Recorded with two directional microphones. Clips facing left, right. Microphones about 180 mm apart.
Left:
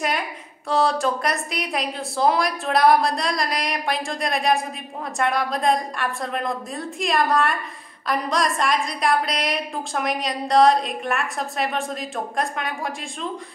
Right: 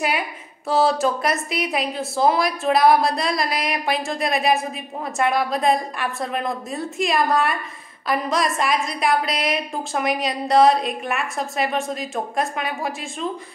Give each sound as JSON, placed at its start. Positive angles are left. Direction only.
{"t": 0.7, "sound": "a woman's voice", "side_deg": -5}